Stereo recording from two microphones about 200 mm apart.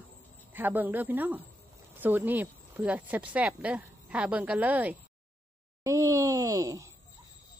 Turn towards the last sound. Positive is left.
turn(degrees=-15)  # may be behind; listen again after turning